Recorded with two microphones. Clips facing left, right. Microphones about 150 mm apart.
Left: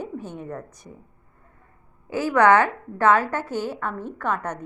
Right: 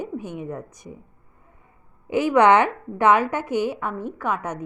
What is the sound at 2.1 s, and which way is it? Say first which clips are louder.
A woman's voice: right 1 dB; 20° right (ahead or behind).